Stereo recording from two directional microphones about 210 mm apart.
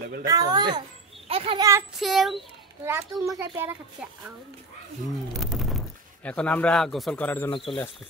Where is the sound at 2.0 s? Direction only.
Centre (ahead or behind).